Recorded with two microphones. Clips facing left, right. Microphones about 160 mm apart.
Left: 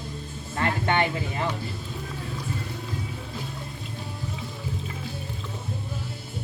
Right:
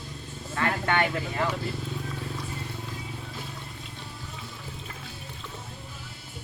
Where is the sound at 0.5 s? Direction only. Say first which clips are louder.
Left 1 dB; 25° left (ahead or behind).